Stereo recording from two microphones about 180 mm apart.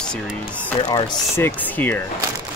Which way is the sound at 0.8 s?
25° left (ahead or behind).